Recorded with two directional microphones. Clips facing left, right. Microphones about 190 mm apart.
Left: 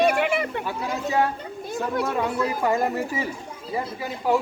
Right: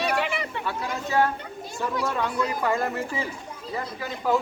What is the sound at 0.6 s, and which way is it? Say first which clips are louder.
Speech: left 2 dB; 15° left (ahead or behind).